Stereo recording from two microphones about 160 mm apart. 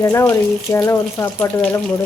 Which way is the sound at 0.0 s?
15° left (ahead or behind).